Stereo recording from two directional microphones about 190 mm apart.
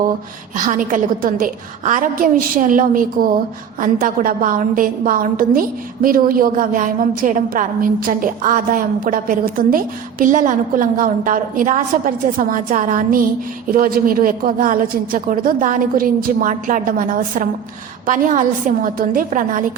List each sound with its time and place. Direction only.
0.5 s a woman's voice: 45° right (ahead or behind)